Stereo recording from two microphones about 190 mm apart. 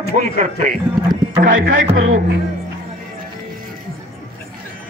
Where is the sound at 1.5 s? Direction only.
90° right.